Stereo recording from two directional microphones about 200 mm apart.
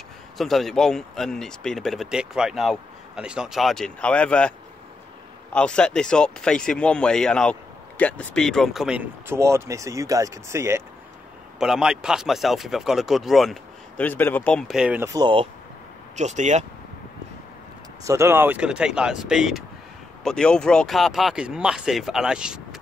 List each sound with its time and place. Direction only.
0.4 s speech: centre (ahead or behind)
11.6 s speech: 5° right (ahead or behind)
15.1 s speech: 25° right (ahead or behind)
16.2 s speech: 35° right (ahead or behind)
18.0 s speech: 15° right (ahead or behind)